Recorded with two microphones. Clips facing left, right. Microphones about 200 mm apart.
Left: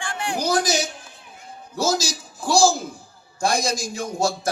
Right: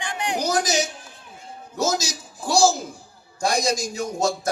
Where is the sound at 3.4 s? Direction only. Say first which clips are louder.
Even; 40° right (ahead or behind).